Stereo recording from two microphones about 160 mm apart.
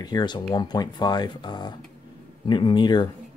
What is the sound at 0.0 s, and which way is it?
Speech, 25° left (ahead or behind).